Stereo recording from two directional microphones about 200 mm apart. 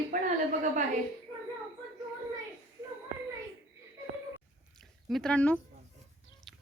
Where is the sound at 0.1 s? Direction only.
40° right (ahead or behind).